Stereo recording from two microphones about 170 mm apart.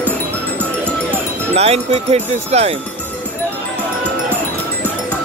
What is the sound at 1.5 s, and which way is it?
Speech, 35° right (ahead or behind).